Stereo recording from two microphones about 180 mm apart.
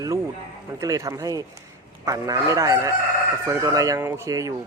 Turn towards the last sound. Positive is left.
turn(degrees=-15)  # may be behind; listen again after turning